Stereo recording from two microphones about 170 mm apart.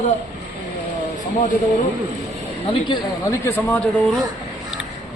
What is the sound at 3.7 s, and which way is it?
Speech, centre (ahead or behind).